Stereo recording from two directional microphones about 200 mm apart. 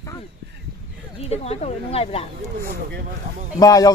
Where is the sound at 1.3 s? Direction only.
30° left (ahead or behind).